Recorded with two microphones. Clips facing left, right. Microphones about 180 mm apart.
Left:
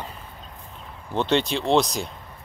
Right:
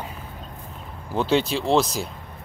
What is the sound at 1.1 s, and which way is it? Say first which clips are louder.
Speech: right 1 dB; 5° right (ahead or behind).